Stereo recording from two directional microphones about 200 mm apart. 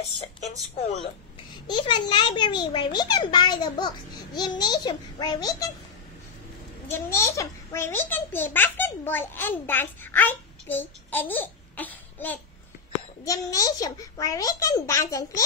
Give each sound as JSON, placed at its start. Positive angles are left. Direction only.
{"t": 1.7, "sound": "a child's voice", "side_deg": 25}
{"t": 6.9, "sound": "a child's voice", "side_deg": 15}